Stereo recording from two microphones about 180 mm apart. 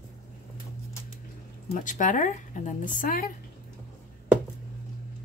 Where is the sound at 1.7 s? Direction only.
45° left (ahead or behind).